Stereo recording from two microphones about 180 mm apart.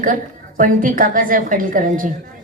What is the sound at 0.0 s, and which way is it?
A woman's voice, 50° right (ahead or behind).